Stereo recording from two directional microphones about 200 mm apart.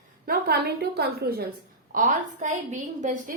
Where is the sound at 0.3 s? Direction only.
50° right (ahead or behind).